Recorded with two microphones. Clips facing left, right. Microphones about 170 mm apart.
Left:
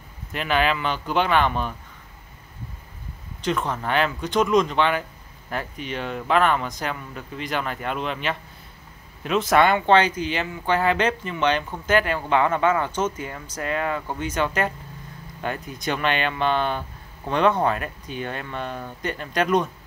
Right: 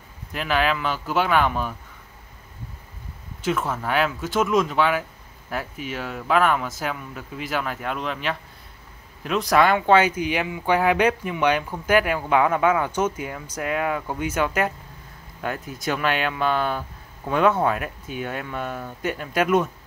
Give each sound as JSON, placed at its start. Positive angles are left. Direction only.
{"t": 0.3, "sound": "speech", "side_deg": 0}
{"t": 3.3, "sound": "speech", "side_deg": -5}